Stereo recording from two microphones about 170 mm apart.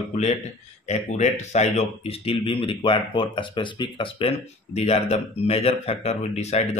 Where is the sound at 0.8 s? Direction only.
40° left (ahead or behind).